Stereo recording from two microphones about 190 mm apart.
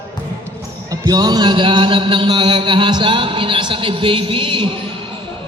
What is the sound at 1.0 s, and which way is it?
Chant, 20° right (ahead or behind).